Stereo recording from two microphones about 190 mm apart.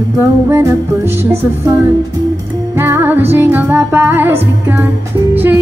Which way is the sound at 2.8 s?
10° right (ahead or behind).